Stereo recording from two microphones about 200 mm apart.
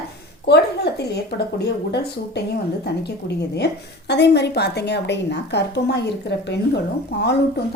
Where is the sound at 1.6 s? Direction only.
55° left (ahead or behind).